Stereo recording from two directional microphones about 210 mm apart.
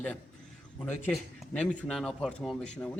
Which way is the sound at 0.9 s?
10° left (ahead or behind).